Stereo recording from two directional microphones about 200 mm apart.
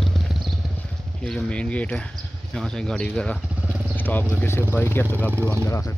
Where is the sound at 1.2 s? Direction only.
5° left (ahead or behind).